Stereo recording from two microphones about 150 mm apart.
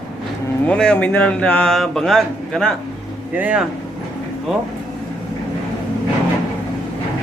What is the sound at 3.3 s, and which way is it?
Speech, 10° right (ahead or behind).